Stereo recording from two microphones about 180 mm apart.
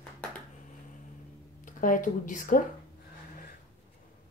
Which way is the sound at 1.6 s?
45° left (ahead or behind).